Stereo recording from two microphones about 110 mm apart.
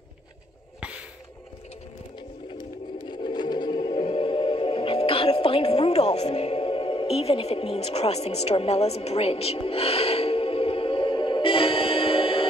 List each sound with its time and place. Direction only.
0.7 s a sound: 10° right (ahead or behind)
3.1 s music: 40° left (ahead or behind)
4.0 s music: 55° left (ahead or behind)